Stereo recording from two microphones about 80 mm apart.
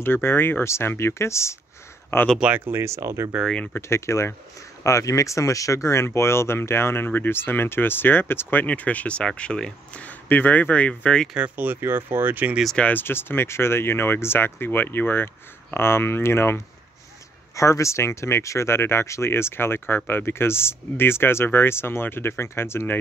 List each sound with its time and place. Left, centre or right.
0.0 s speech: left
2.3 s speech: centre; by 3.3 s right
3.9 s speech: left; by 10.0 s centre
10.0 s speech: left
11.3 s speech: right
12.7 s speech: left